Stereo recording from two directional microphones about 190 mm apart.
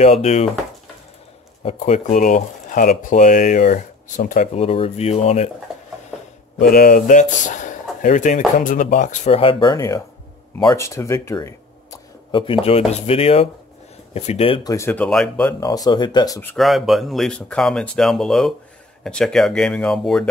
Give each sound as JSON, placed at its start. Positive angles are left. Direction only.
{"t": 0.0, "sound": "speech", "side_deg": 35}
{"t": 1.6, "sound": "speech", "side_deg": 35}
{"t": 6.6, "sound": "speech", "side_deg": 55}
{"t": 14.7, "sound": "speech", "side_deg": 10}
{"t": 15.6, "sound": "speech", "side_deg": 20}
{"t": 16.3, "sound": "speech", "side_deg": 10}
{"t": 16.6, "sound": "speech", "side_deg": 0}